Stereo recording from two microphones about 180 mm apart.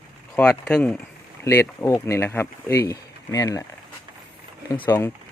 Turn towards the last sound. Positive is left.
turn(degrees=15)  # may be behind; listen again after turning